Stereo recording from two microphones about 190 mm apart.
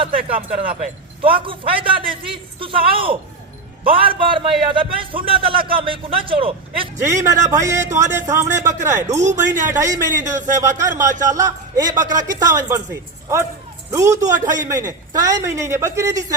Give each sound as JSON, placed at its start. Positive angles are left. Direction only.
{"t": 0.3, "sound": "speech", "side_deg": -50}
{"t": 1.2, "sound": "a man's voice", "side_deg": -25}
{"t": 7.0, "sound": "a man's voice", "side_deg": -15}